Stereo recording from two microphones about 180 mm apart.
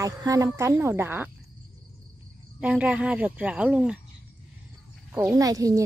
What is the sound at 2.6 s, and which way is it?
A woman's voice, 5° right (ahead or behind).